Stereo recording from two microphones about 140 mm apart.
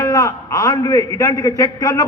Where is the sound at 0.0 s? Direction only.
20° left (ahead or behind).